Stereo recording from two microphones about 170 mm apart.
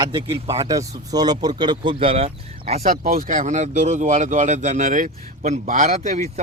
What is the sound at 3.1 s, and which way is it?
Speech, 50° right (ahead or behind).